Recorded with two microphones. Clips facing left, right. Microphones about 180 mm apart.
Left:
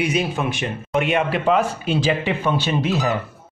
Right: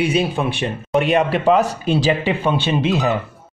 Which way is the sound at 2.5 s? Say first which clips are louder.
Right 2 dB; 25° right (ahead or behind).